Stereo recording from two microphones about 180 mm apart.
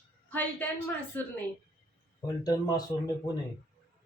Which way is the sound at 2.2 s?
20° left (ahead or behind).